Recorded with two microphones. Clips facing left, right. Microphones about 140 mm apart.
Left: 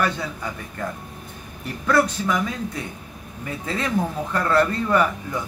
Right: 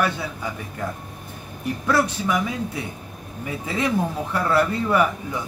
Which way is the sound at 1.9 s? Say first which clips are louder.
Left 2 dB; 10° right (ahead or behind).